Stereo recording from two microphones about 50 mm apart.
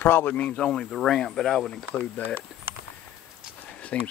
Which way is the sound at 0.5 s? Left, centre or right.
Centre.